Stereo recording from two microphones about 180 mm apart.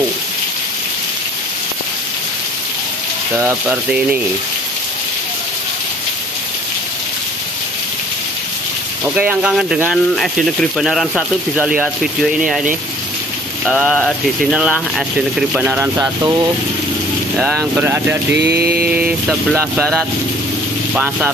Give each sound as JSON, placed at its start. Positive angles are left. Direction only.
{"t": 3.3, "sound": "speech", "side_deg": -10}
{"t": 9.0, "sound": "speech", "side_deg": -10}
{"t": 13.7, "sound": "speech", "side_deg": 0}
{"t": 17.4, "sound": "speech", "side_deg": 0}
{"t": 18.3, "sound": "mantra", "side_deg": -65}
{"t": 18.9, "sound": "speech", "side_deg": -10}
{"t": 20.9, "sound": "speech", "side_deg": -10}